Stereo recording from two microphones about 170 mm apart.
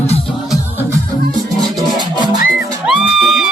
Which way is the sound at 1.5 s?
25° right (ahead or behind).